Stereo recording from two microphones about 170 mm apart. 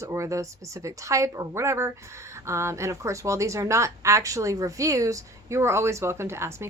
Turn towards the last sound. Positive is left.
turn(degrees=-15)  # may be behind; listen again after turning